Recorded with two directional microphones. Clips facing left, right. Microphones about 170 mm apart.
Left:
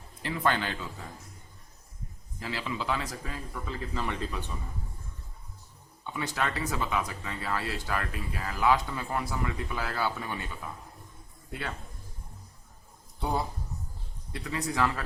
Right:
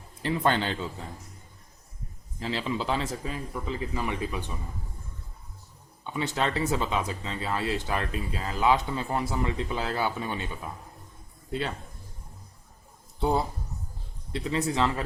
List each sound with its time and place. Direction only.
0.2 s speech: 30° right (ahead or behind)
2.4 s speech: 25° right (ahead or behind)
6.1 s speech: 25° right (ahead or behind)
13.1 s speech: 25° right (ahead or behind)